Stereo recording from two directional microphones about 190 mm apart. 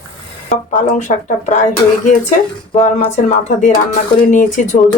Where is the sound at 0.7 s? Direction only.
40° left (ahead or behind).